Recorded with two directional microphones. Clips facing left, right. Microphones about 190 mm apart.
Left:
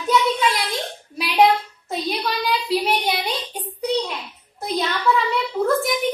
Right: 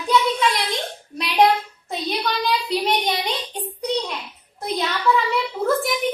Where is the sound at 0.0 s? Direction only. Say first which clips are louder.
Even; centre (ahead or behind).